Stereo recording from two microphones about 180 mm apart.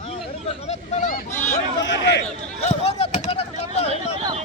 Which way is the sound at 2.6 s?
35° left (ahead or behind).